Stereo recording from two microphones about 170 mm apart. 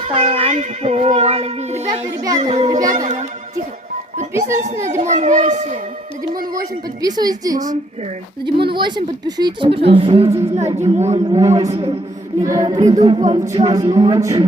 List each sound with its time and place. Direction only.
0.1 s a child's voice: 35° right (ahead or behind)
4.9 s a child's voice: 45° right (ahead or behind)
7.0 s a woman's voice: 20° right (ahead or behind)
12.4 s a woman's voice: 20° right (ahead or behind)